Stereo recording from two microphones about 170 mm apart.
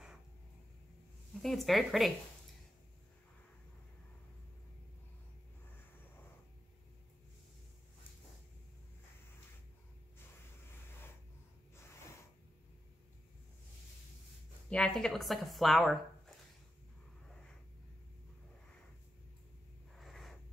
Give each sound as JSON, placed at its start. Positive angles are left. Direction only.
{"t": 1.3, "sound": "speech", "side_deg": 0}
{"t": 14.7, "sound": "speech", "side_deg": 5}
{"t": 20.0, "sound": "writing", "side_deg": 0}